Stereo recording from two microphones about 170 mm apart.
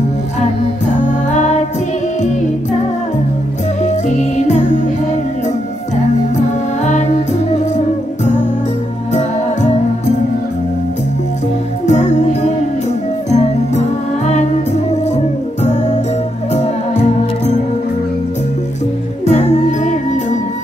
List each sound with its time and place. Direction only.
1.3 s music: 45° left (ahead or behind)
3.8 s music: 45° left (ahead or behind)
6.8 s music: 45° left (ahead or behind)
9.1 s music: 45° left (ahead or behind)
11.8 s music: 40° left (ahead or behind)
19.2 s music: 40° left (ahead or behind)